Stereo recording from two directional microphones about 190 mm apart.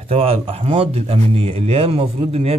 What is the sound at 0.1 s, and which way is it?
Speech, 30° right (ahead or behind).